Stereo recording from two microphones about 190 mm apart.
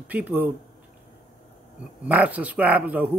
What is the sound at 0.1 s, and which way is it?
Speech, 10° right (ahead or behind).